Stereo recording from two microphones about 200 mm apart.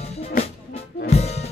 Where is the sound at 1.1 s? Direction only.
30° left (ahead or behind).